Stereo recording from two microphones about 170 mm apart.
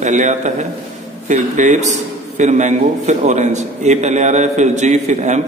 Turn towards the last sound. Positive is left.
turn(degrees=-45)  # may be behind; listen again after turning